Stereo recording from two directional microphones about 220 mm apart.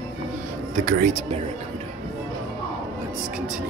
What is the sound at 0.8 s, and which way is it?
Speech, 40° right (ahead or behind).